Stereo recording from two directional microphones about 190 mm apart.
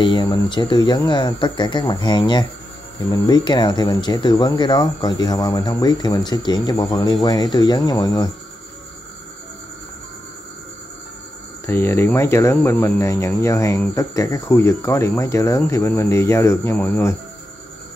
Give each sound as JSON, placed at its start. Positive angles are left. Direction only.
{"t": 0.0, "sound": "speech", "side_deg": 25}
{"t": 11.6, "sound": "speech", "side_deg": 15}